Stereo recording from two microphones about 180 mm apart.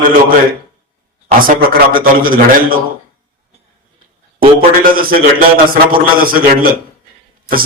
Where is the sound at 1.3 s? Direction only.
50° right (ahead or behind).